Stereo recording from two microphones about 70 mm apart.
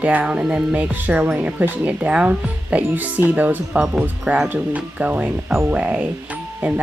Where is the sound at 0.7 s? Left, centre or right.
Right.